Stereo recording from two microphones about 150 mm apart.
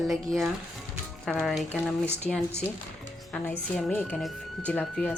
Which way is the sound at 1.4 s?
Centre (ahead or behind).